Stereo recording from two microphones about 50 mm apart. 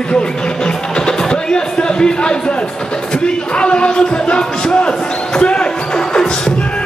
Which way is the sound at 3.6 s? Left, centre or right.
Left.